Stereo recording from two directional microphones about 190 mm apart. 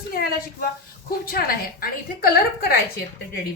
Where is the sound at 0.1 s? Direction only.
50° left (ahead or behind).